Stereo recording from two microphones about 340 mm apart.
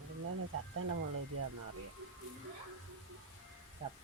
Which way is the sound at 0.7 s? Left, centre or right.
Right.